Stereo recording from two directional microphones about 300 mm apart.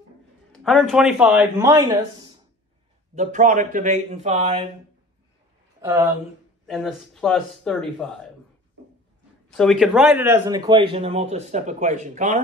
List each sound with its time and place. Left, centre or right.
0.7 s speech: centre
3.2 s speech: right
5.8 s speech: centre
9.6 s speech: centre; by 12.4 s right